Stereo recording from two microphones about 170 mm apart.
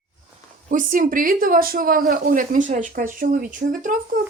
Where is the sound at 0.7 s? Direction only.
50° right (ahead or behind).